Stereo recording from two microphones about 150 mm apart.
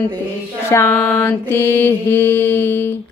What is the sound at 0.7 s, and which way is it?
A woman's voice, 15° left (ahead or behind).